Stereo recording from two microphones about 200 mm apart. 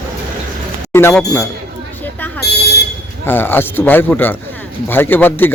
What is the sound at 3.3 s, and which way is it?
Speech, 10° left (ahead or behind).